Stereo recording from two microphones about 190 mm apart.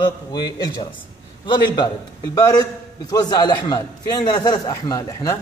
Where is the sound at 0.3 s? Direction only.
20° left (ahead or behind).